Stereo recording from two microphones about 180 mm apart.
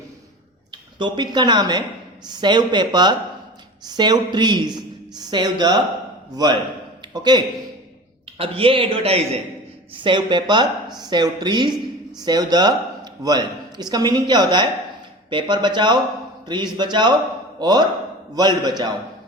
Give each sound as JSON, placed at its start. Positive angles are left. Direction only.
{"t": 0.7, "sound": "a man's voice", "side_deg": -25}